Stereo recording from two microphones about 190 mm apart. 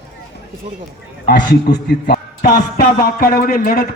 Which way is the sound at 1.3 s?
60° left (ahead or behind).